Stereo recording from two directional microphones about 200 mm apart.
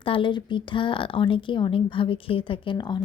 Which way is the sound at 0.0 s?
25° left (ahead or behind).